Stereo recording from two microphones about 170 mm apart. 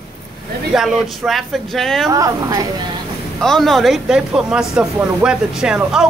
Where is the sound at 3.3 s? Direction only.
Centre (ahead or behind).